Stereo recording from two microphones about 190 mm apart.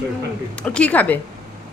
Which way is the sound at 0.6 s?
5° left (ahead or behind).